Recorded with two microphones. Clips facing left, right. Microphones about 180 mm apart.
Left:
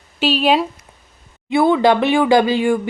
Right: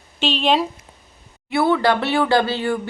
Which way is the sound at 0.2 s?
5° left (ahead or behind).